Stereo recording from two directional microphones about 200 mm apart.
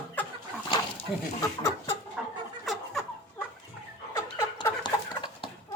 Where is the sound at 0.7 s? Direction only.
20° left (ahead or behind).